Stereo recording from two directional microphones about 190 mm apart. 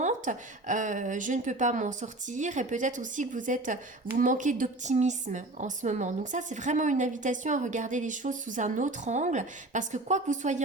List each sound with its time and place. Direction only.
0.0 s a woman's voice: 40° right (ahead or behind)